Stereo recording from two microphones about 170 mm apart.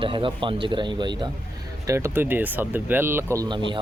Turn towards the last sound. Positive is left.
turn(degrees=-25)  # may be behind; listen again after turning